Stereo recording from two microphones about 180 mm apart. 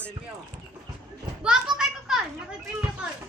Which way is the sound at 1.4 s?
5° right (ahead or behind).